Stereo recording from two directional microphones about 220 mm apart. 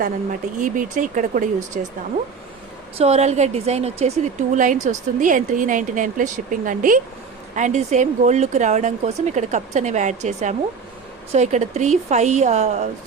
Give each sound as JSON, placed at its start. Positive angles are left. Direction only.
{"t": 0.6, "sound": "speech", "side_deg": -35}
{"t": 3.0, "sound": "speech", "side_deg": -30}
{"t": 11.3, "sound": "speech", "side_deg": -30}